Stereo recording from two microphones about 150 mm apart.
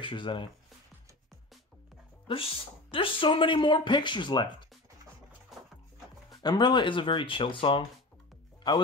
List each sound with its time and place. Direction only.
0.0 s speech: 35° left (ahead or behind)
2.2 s speech: 40° left (ahead or behind)
6.4 s speech: 30° left (ahead or behind)